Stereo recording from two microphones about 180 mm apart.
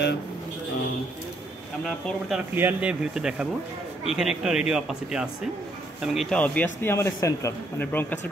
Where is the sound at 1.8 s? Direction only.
Centre (ahead or behind).